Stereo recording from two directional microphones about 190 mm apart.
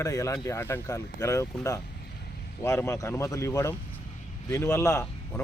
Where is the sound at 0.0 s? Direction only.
15° left (ahead or behind).